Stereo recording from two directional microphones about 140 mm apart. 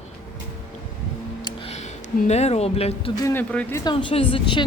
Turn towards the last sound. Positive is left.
turn(degrees=35)  # may be behind; listen again after turning